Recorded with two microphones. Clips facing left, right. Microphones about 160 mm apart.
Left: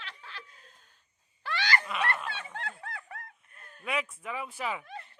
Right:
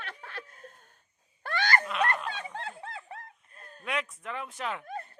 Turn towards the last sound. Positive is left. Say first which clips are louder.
# right 5 dB
turn(degrees=-45)  # may be behind; listen again after turning